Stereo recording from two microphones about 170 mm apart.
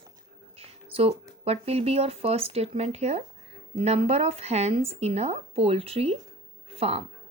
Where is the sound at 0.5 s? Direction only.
35° right (ahead or behind).